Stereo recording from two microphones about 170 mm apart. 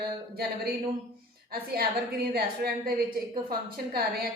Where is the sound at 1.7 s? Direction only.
65° right (ahead or behind).